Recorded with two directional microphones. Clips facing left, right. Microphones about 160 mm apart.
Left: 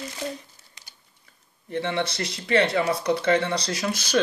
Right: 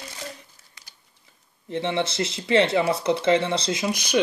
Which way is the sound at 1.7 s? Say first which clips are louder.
Right 1 dB; 20° right (ahead or behind).